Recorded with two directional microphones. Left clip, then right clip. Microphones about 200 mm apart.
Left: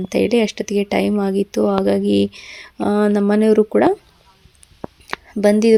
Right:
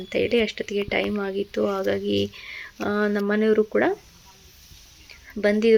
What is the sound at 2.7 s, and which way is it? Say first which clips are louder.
Speech: left 7 dB; 30° left (ahead or behind).